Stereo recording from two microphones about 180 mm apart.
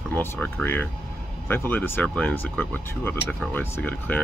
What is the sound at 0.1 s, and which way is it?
Speech, 10° left (ahead or behind).